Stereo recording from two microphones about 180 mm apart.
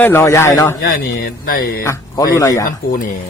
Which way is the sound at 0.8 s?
60° left (ahead or behind).